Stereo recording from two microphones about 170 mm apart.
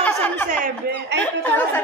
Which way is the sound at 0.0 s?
10° left (ahead or behind).